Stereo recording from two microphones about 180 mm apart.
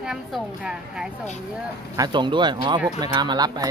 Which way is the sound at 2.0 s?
25° right (ahead or behind).